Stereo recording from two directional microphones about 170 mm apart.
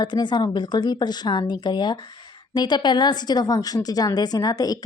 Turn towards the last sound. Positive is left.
turn(degrees=20)  # may be behind; listen again after turning